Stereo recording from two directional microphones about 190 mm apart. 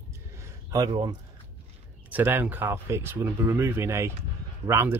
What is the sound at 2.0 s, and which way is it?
Speech, 10° right (ahead or behind).